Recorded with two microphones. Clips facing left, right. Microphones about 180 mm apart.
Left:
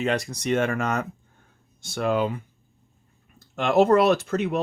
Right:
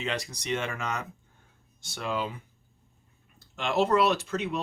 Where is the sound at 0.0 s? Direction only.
50° left (ahead or behind).